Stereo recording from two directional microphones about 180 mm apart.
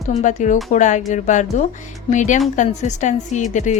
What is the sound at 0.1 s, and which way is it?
Speech, 40° left (ahead or behind).